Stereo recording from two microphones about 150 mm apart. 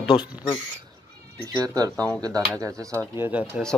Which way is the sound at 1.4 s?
25° right (ahead or behind).